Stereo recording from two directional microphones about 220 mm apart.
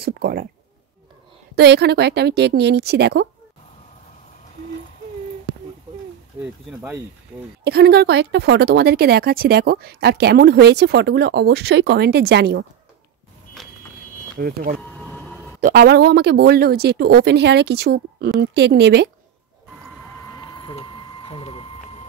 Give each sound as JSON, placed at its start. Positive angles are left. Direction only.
{"t": 0.0, "sound": "a sound", "side_deg": -40}
{"t": 1.5, "sound": "a woman's voice", "side_deg": -50}
{"t": 6.4, "sound": "speech", "side_deg": -10}
{"t": 7.6, "sound": "a woman's voice", "side_deg": -50}
{"t": 14.4, "sound": "speech", "side_deg": -40}
{"t": 14.8, "sound": "vehicle", "side_deg": 5}
{"t": 15.6, "sound": "a woman's voice", "side_deg": -45}
{"t": 20.2, "sound": "a sound", "side_deg": 20}